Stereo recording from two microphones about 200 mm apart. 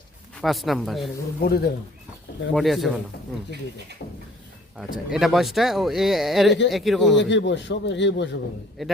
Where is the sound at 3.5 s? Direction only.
55° right (ahead or behind).